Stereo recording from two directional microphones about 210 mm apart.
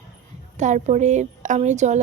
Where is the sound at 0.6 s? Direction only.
35° right (ahead or behind).